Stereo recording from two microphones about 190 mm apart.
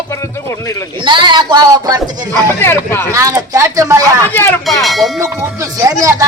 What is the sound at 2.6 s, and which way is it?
Speech, 10° left (ahead or behind).